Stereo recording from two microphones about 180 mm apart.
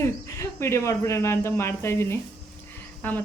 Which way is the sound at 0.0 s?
15° left (ahead or behind).